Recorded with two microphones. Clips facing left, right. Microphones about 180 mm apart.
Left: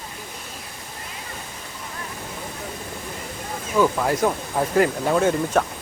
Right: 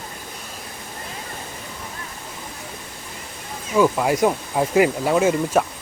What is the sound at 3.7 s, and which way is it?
Speech, 10° right (ahead or behind).